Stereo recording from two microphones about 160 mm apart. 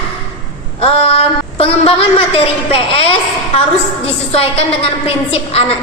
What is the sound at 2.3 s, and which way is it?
Speech, 35° left (ahead or behind).